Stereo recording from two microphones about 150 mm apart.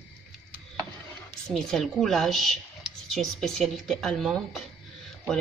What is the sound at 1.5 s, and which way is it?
Speech, centre (ahead or behind).